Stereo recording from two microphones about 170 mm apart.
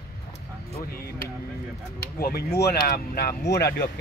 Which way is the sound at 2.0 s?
65° left (ahead or behind).